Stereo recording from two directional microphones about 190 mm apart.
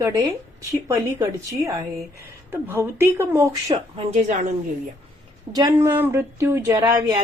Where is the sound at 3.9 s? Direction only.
40° right (ahead or behind).